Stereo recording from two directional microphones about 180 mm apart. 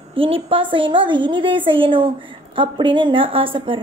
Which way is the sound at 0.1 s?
30° right (ahead or behind).